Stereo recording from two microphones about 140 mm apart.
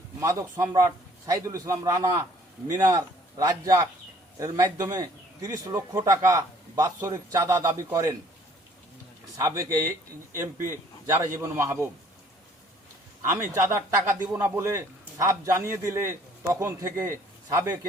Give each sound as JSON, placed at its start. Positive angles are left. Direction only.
{"t": 0.2, "sound": "speech", "side_deg": -25}
{"t": 9.4, "sound": "speech", "side_deg": -20}
{"t": 13.3, "sound": "speech", "side_deg": -15}